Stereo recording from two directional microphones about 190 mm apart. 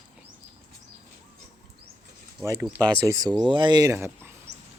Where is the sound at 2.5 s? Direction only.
5° right (ahead or behind).